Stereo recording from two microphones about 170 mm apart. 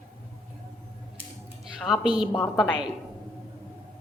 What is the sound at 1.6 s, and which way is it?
Speech, 5° right (ahead or behind).